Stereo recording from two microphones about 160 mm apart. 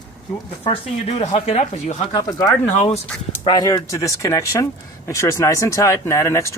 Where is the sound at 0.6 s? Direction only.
35° left (ahead or behind).